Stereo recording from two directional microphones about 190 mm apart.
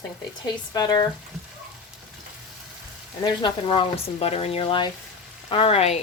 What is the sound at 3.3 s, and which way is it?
A woman's voice, 25° left (ahead or behind).